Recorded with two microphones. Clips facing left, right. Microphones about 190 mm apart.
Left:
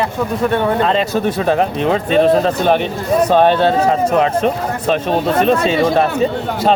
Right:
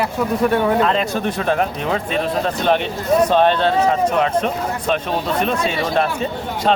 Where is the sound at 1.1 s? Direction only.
5° left (ahead or behind).